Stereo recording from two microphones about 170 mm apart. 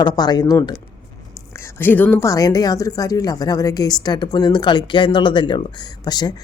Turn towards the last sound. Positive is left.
turn(degrees=25)  # may be behind; listen again after turning